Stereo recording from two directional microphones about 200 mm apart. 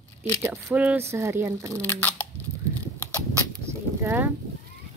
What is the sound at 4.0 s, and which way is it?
Speech, 10° right (ahead or behind).